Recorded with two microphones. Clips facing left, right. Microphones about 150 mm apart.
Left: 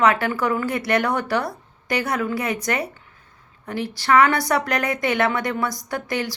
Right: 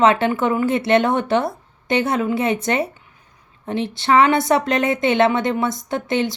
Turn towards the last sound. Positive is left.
turn(degrees=-25)  # may be behind; listen again after turning